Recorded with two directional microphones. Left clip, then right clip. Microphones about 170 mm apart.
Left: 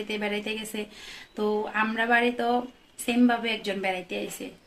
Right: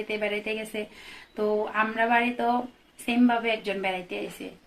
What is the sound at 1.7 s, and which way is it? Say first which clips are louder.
Speech: left 1 dB; 20° left (ahead or behind).